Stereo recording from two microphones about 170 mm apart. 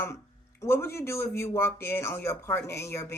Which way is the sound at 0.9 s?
15° left (ahead or behind).